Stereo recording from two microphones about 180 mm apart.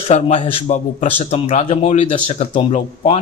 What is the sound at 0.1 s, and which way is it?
Speech, 35° left (ahead or behind).